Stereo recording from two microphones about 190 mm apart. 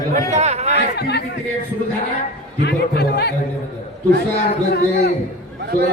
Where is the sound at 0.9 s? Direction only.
60° left (ahead or behind).